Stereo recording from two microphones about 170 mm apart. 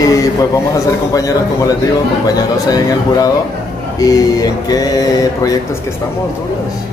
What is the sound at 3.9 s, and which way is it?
Speech, 20° left (ahead or behind).